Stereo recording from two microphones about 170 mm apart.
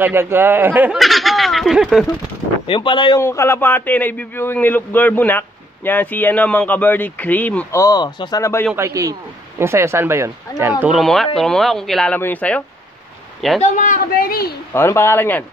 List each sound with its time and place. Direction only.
0.0 s speech: 15° right (ahead or behind)
0.9 s speech: centre (ahead or behind)
2.6 s speech: 30° left (ahead or behind)
3.2 s speech: 15° left (ahead or behind)
8.7 s speech: 20° right (ahead or behind); by 12.6 s 10° left (ahead or behind)
13.6 s speech: 50° left (ahead or behind)
14.7 s speech: 15° left (ahead or behind)